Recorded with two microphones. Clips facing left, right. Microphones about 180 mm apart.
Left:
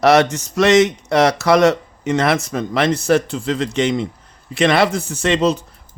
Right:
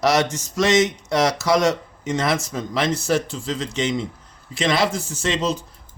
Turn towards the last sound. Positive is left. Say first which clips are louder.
# left 6 dB
turn(degrees=60)  # may be behind; listen again after turning